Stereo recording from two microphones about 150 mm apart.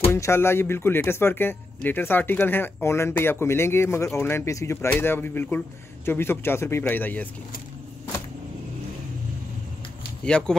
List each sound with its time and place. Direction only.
0.1 s speech: 15° left (ahead or behind)
10.2 s speech: 5° left (ahead or behind)